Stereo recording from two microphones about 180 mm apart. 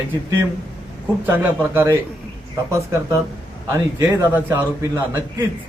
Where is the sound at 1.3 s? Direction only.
10° right (ahead or behind).